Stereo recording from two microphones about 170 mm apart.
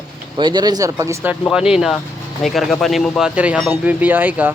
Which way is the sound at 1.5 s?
5° right (ahead or behind).